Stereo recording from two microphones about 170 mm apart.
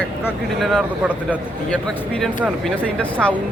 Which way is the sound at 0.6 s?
5° right (ahead or behind).